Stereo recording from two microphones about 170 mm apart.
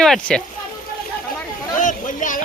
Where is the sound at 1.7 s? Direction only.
50° left (ahead or behind).